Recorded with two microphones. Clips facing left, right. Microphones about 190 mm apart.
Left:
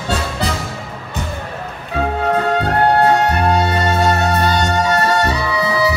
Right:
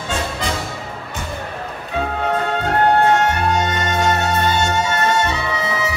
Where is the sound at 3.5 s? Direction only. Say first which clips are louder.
Left 3 dB; 35° left (ahead or behind).